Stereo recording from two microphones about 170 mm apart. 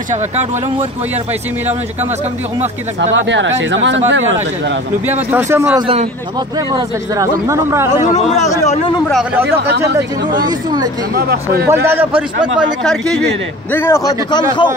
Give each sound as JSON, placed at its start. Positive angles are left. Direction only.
{"t": 0.1, "sound": "speech", "side_deg": -40}
{"t": 3.0, "sound": "speech", "side_deg": -90}
{"t": 5.0, "sound": "speech", "side_deg": -10}
{"t": 8.1, "sound": "speech", "side_deg": 40}
{"t": 9.1, "sound": "speech", "side_deg": -10}
{"t": 9.6, "sound": "speech", "side_deg": -75}
{"t": 11.1, "sound": "speech", "side_deg": -65}
{"t": 11.7, "sound": "speech", "side_deg": -15}
{"t": 12.5, "sound": "speech", "side_deg": 0}
{"t": 13.7, "sound": "a man's voice", "side_deg": 15}